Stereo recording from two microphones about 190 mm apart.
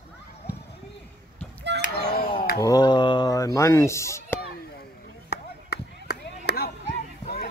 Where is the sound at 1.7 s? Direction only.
60° right (ahead or behind).